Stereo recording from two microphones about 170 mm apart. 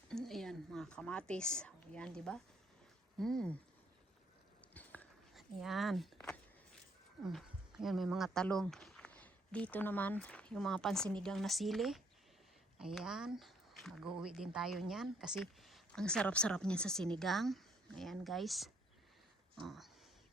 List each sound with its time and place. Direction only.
0.1 s a woman's voice: centre (ahead or behind)
4.7 s biting: 10° left (ahead or behind)
5.3 s speech: centre (ahead or behind)
7.3 s speech: centre (ahead or behind)